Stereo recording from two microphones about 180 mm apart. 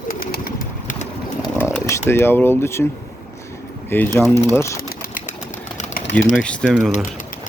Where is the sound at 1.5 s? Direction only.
15° left (ahead or behind).